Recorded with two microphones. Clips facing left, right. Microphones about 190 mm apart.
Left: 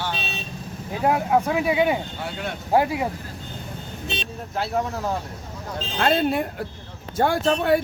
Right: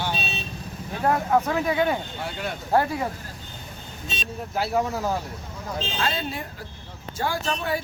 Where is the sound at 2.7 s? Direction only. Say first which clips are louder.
Left 2 dB; 15° left (ahead or behind).